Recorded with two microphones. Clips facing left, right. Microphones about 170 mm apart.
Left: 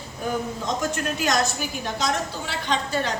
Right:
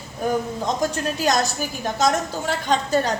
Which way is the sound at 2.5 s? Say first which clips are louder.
Right 7 dB; 45° right (ahead or behind).